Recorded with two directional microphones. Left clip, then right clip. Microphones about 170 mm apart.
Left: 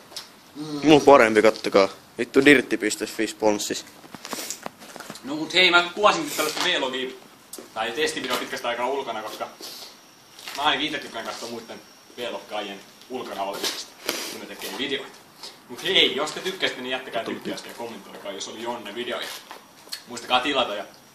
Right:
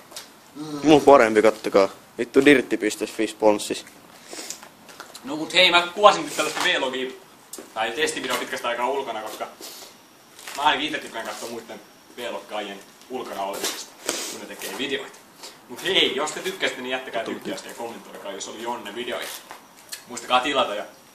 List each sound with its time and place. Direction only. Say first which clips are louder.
0.7 s speech: even; centre (ahead or behind)
5.5 s a man's voice: right 1 dB; 45° right (ahead or behind)
6.6 s a man's voice: right 2 dB; 10° right (ahead or behind)
7.7 s a man's voice: right 1 dB; 15° right (ahead or behind)
10.6 s a man's voice: right 2 dB; 15° right (ahead or behind)
15.7 s a man's voice: left 1 dB; 10° right (ahead or behind)
17.8 s a man's voice: right 1 dB; 15° right (ahead or behind)